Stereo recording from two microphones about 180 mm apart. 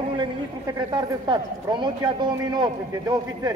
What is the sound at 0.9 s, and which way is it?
Speech, 25° right (ahead or behind).